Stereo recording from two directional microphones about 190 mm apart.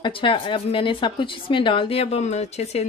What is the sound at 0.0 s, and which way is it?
A woman's voice, 25° left (ahead or behind).